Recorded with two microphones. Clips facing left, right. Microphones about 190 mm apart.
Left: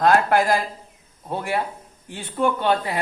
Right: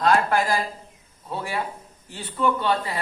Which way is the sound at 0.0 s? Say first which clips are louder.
Left 3 dB; 50° left (ahead or behind).